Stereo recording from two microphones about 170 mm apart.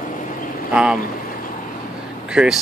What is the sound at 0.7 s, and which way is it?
Speech, 5° right (ahead or behind).